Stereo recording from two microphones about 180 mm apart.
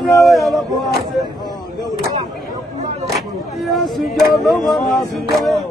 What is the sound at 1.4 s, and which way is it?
Speech, 20° left (ahead or behind).